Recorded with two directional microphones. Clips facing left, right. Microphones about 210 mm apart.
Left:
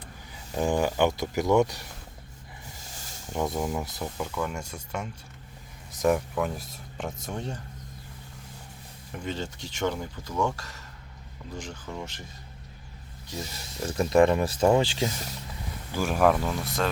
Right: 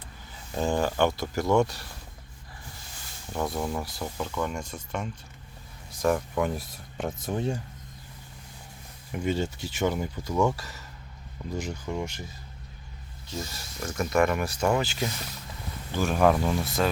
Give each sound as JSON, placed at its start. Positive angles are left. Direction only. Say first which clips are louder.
{"t": 0.5, "sound": "speech", "louder": "left 1 dB", "side_deg": 15}
{"t": 2.9, "sound": "a sound", "louder": "left 3 dB", "side_deg": 40}
{"t": 3.5, "sound": "speech", "louder": "left 1 dB", "side_deg": 20}
{"t": 4.0, "sound": "speech", "louder": "right 3 dB", "side_deg": 5}
{"t": 6.3, "sound": "speech", "louder": "right 2 dB", "side_deg": 0}
{"t": 9.1, "sound": "speech", "louder": "right 5 dB", "side_deg": -10}
{"t": 13.3, "sound": "speech", "louder": "right 1 dB", "side_deg": 15}
{"t": 13.7, "sound": "speech", "louder": "left 4 dB", "side_deg": 30}
{"t": 15.9, "sound": "speech", "louder": "even", "side_deg": 10}